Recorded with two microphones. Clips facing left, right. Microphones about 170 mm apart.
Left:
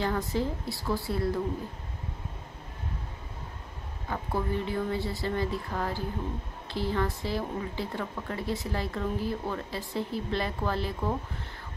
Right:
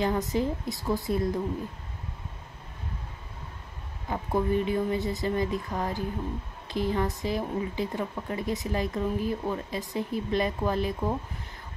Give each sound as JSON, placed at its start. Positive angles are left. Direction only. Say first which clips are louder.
{"t": 0.0, "sound": "a woman's voice", "louder": "right 3 dB", "side_deg": -20}
{"t": 4.1, "sound": "speech", "louder": "right 4 dB", "side_deg": -20}